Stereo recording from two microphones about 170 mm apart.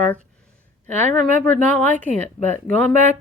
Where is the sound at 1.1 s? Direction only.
45° right (ahead or behind).